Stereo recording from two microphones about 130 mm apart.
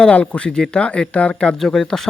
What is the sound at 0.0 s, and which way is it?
Speech, 10° left (ahead or behind).